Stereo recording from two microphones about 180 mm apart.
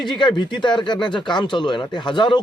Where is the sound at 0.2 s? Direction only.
25° left (ahead or behind).